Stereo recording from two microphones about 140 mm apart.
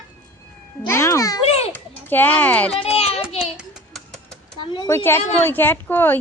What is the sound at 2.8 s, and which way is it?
Speech, 45° left (ahead or behind).